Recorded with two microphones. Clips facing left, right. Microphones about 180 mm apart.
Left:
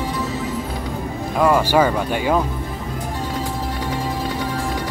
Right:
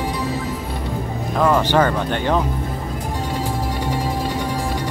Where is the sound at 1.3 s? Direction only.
10° left (ahead or behind).